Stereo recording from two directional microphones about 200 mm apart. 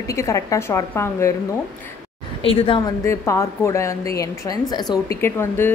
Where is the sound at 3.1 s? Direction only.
15° left (ahead or behind).